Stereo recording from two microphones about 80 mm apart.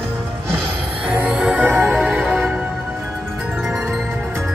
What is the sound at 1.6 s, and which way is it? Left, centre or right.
Music, right.